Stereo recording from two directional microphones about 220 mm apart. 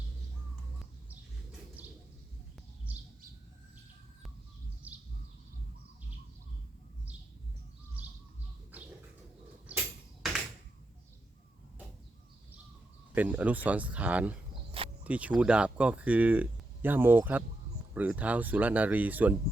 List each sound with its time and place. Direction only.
1.8 s bird: 10° right (ahead or behind)
4.8 s bird: 5° right (ahead or behind)
8.0 s bird: 5° right (ahead or behind)
9.7 s a sound: 5° right (ahead or behind)
13.1 s speech: 5° right (ahead or behind)